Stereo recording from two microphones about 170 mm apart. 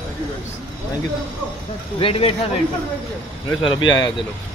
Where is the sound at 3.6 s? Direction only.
25° left (ahead or behind).